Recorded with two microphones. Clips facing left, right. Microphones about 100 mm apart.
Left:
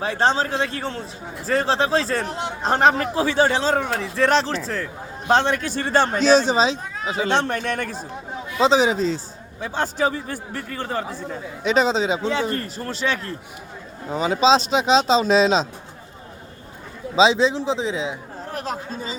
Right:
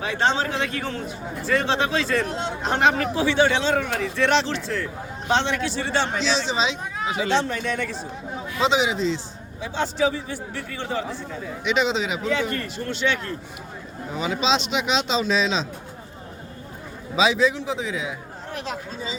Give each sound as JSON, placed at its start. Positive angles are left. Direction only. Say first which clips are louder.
{"t": 0.0, "sound": "a man's voice", "louder": "left 2 dB", "side_deg": 35}
{"t": 7.3, "sound": "a man's voice", "louder": "left 2 dB", "side_deg": 55}
{"t": 8.5, "sound": "a man's voice", "louder": "left 4 dB", "side_deg": 35}
{"t": 17.2, "sound": "a man's voice", "louder": "left 3 dB", "side_deg": 25}
{"t": 18.5, "sound": "a man's voice", "louder": "left 3 dB", "side_deg": 40}